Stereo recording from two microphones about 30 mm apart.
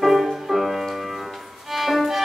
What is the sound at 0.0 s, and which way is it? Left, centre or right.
Music, centre.